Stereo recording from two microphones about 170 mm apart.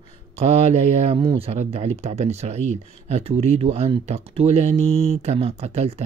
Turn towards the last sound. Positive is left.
turn(degrees=-35)  # may be behind; listen again after turning